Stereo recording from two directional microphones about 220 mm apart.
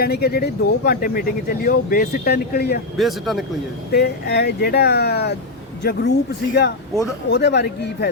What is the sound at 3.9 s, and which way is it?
Speech, 50° left (ahead or behind).